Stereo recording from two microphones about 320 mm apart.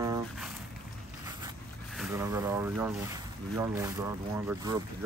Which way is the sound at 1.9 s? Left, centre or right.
Centre.